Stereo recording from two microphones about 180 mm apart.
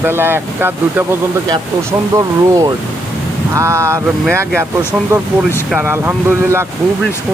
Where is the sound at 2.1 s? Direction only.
20° right (ahead or behind).